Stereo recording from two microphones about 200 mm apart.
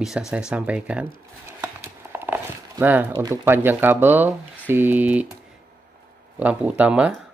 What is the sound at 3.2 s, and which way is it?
Speech, 15° right (ahead or behind).